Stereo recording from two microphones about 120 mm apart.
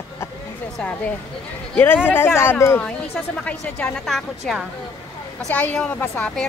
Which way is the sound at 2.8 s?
10° left (ahead or behind).